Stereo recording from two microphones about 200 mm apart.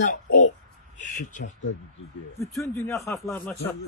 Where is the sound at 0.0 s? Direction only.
40° left (ahead or behind).